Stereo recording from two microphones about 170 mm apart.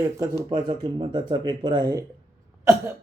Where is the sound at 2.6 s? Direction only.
15° right (ahead or behind).